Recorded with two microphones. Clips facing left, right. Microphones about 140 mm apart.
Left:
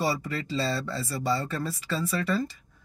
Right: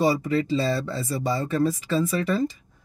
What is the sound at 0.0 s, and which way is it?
Speech, 20° right (ahead or behind).